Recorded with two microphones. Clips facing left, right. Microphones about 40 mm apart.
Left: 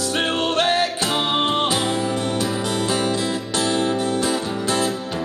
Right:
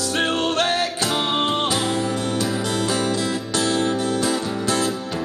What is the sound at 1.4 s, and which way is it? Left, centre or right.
Music, left.